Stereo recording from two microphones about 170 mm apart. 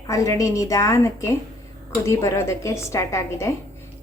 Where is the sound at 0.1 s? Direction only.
20° left (ahead or behind).